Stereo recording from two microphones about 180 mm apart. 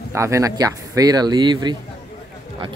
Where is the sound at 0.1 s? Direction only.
15° right (ahead or behind).